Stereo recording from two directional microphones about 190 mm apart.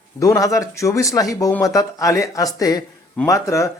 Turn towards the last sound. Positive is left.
turn(degrees=15)  # may be behind; listen again after turning